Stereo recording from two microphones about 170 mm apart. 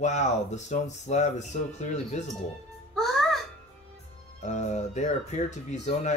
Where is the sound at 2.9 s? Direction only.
Centre (ahead or behind).